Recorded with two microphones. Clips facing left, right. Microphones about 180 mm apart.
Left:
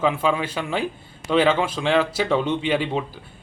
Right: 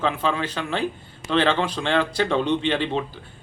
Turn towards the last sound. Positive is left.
turn(degrees=10)  # may be behind; listen again after turning